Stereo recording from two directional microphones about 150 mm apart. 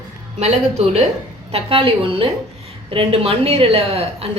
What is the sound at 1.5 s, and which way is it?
A woman's voice, 40° right (ahead or behind).